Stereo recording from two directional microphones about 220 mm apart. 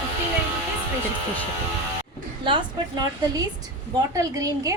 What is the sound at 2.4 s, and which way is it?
A woman's voice, 20° right (ahead or behind).